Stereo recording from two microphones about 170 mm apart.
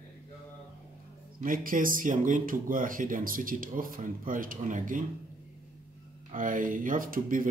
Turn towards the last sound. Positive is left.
turn(degrees=-55)  # may be behind; listen again after turning